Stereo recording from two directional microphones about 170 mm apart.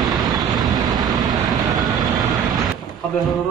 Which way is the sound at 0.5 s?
25° right (ahead or behind).